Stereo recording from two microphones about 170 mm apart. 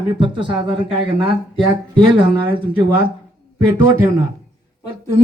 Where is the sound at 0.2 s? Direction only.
30° right (ahead or behind).